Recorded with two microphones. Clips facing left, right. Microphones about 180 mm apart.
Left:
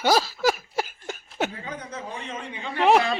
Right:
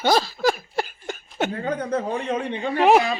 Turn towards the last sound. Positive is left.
turn(degrees=-5)  # may be behind; listen again after turning